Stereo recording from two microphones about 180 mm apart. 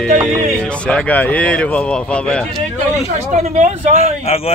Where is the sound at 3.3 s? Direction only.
40° right (ahead or behind).